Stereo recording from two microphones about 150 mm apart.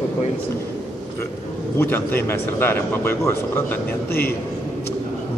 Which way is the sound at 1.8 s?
15° left (ahead or behind).